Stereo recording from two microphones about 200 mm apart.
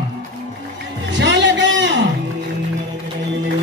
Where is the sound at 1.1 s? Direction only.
65° right (ahead or behind).